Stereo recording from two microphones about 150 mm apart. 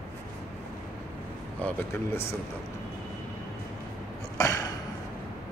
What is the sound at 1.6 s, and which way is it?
Speech, 15° left (ahead or behind).